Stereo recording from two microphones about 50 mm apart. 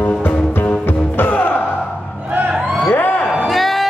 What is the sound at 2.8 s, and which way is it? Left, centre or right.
Music, left.